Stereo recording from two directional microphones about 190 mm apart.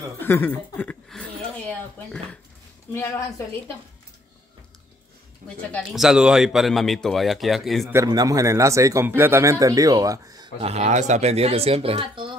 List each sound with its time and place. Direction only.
0.2 s a woman's voice: 10° left (ahead or behind)
5.7 s speech: centre (ahead or behind)
7.9 s speech: 15° right (ahead or behind)
10.6 s speech: 35° right (ahead or behind)